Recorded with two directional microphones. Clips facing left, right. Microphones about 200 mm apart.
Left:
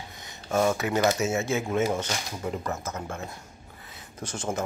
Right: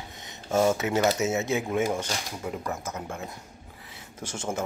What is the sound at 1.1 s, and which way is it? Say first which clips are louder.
Speech: even; 20° right (ahead or behind).